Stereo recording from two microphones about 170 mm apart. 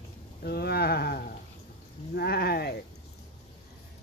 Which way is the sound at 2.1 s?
70° left (ahead or behind).